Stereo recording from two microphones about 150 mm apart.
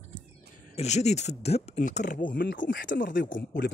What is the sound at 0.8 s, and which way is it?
Speech, 50° left (ahead or behind).